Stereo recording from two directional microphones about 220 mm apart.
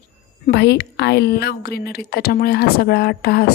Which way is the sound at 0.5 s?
50° left (ahead or behind).